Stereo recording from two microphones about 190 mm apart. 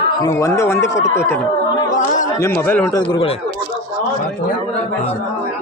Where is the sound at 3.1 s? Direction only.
30° left (ahead or behind).